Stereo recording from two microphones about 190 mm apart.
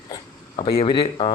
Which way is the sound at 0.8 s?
25° left (ahead or behind).